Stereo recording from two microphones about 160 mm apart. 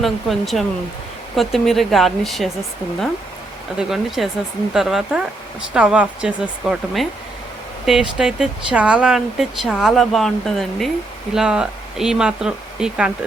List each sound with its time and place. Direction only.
0.0 s speech: centre (ahead or behind)
3.8 s speech: centre (ahead or behind)